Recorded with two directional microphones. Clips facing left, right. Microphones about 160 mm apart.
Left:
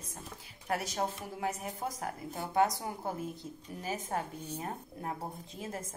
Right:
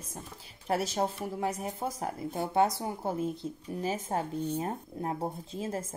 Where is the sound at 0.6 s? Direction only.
25° right (ahead or behind).